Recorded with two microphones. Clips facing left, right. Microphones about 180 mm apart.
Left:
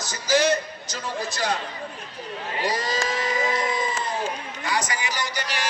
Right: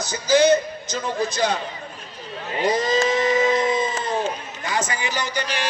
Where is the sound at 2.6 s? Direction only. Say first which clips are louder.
Right 7 dB; 20° right (ahead or behind).